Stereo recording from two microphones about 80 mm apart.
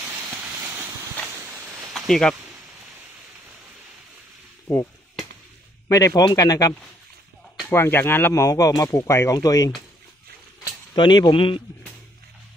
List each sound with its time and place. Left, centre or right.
1.2 s a sound: right
2.0 s speech: centre
5.9 s speech: left
7.7 s speech: left
8.5 s speech: left
9.4 s speech: left
10.9 s speech: left